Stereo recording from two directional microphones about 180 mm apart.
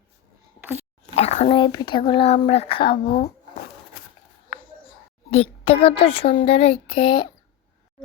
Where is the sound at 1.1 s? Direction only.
35° left (ahead or behind).